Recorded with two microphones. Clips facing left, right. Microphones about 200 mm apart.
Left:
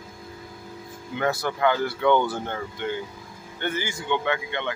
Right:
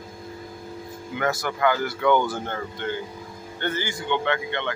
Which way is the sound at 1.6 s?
25° left (ahead or behind).